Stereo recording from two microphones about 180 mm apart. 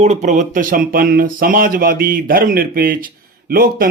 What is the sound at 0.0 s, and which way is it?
Speech, 40° right (ahead or behind).